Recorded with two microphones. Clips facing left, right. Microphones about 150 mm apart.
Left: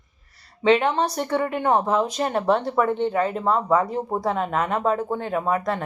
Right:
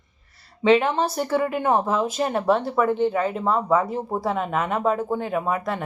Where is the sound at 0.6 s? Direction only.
Centre (ahead or behind).